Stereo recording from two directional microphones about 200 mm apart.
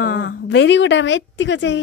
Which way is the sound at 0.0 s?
55° left (ahead or behind).